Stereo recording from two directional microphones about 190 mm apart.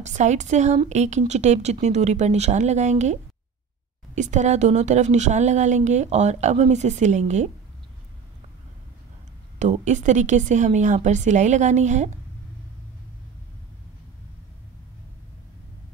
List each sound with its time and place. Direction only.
0.0 s speech: 40° right (ahead or behind)
9.6 s speech: 40° right (ahead or behind)